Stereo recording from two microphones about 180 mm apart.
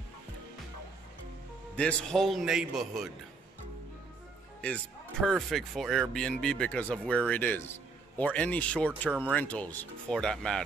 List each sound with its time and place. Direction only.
1.8 s speech: 5° left (ahead or behind)
5.2 s speech: centre (ahead or behind)